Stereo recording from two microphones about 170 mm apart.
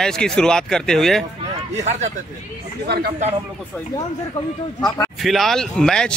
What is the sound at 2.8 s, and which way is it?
Speech, 70° right (ahead or behind).